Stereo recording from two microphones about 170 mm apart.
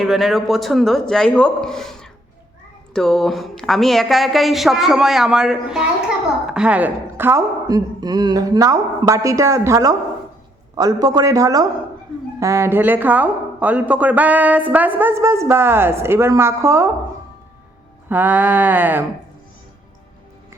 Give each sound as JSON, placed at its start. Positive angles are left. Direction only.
{"t": 0.0, "sound": "a woman's voice", "side_deg": 0}
{"t": 18.1, "sound": "speech", "side_deg": -10}